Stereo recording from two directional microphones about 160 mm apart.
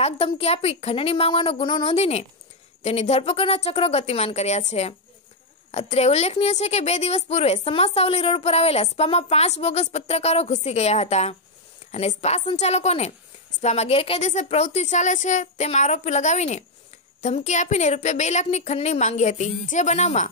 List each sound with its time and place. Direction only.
0.0 s a woman's voice: 40° left (ahead or behind)